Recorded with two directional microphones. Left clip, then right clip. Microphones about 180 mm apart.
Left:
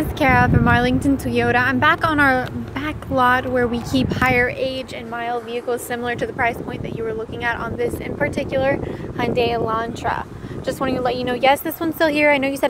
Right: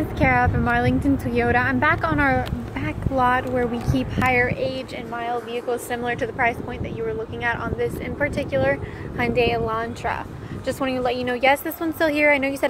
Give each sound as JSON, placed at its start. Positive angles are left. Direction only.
{"t": 0.2, "sound": "speech", "side_deg": 20}
{"t": 5.2, "sound": "speech", "side_deg": 30}